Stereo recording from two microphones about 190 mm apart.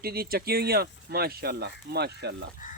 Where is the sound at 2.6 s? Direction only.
40° left (ahead or behind).